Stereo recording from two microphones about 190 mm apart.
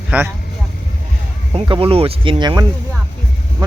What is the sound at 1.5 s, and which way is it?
Speech, 30° right (ahead or behind).